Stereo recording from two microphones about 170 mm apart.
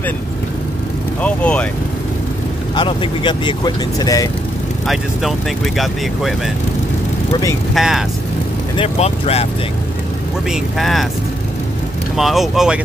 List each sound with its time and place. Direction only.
1.2 s speech: 10° left (ahead or behind)
2.7 s speech: 25° left (ahead or behind)
5.8 s speech: centre (ahead or behind)
7.7 s speech: centre (ahead or behind)
8.7 s speech: 35° left (ahead or behind)
10.5 s speech: centre (ahead or behind)
12.2 s speech: centre (ahead or behind)